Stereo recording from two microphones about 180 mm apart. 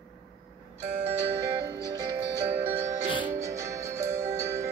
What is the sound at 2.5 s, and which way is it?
Music, 10° right (ahead or behind).